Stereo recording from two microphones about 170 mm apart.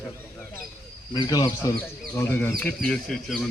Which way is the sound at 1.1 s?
25° left (ahead or behind).